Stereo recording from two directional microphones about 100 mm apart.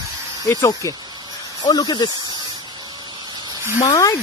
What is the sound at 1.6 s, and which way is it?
Speech, 45° left (ahead or behind).